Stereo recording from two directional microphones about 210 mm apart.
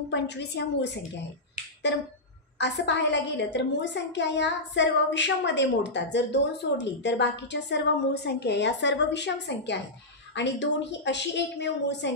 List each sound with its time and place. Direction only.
0.1 s a woman's voice: 55° left (ahead or behind)
2.6 s a woman's voice: 55° left (ahead or behind)